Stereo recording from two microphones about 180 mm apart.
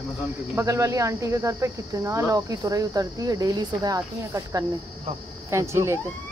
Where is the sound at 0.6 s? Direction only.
15° right (ahead or behind).